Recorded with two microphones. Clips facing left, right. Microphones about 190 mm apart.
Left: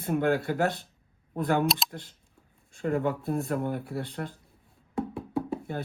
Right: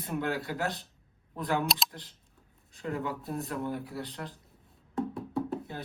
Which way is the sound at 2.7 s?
50° left (ahead or behind).